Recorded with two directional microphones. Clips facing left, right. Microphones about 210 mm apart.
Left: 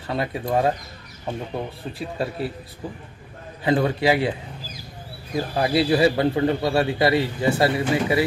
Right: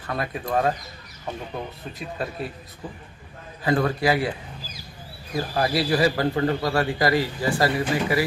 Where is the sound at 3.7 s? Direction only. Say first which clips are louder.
Left 2 dB; 25° left (ahead or behind).